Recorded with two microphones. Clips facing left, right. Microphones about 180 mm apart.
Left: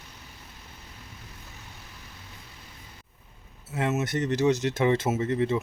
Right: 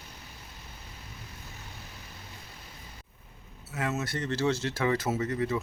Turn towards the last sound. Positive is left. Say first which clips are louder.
# left 4 dB
turn(degrees=25)  # may be behind; listen again after turning